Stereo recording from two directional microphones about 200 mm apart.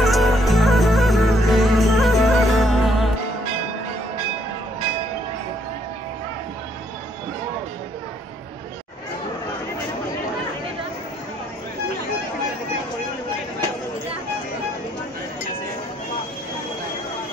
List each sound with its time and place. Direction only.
0.0 s music: centre (ahead or behind)